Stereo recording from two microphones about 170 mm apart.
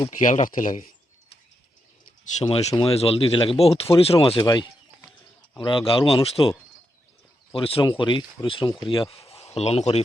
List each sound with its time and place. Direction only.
0.2 s speech: 50° left (ahead or behind)
2.2 s speech: 40° left (ahead or behind)